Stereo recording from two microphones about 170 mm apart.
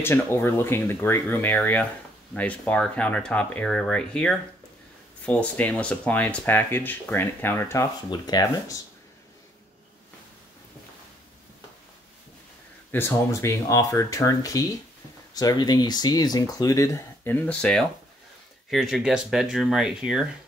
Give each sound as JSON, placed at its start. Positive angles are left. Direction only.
{"t": 0.0, "sound": "speech", "side_deg": 15}
{"t": 12.9, "sound": "speech", "side_deg": 15}